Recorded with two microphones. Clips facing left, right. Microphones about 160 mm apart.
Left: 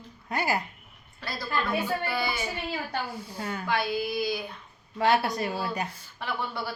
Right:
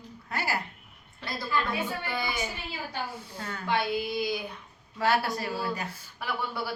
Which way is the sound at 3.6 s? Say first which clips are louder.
Right 1 dB; 25° right (ahead or behind).